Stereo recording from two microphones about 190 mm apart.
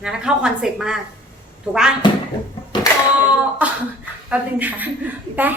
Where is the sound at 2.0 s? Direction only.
25° left (ahead or behind).